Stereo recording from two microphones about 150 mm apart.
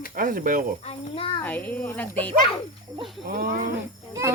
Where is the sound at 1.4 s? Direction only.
10° left (ahead or behind).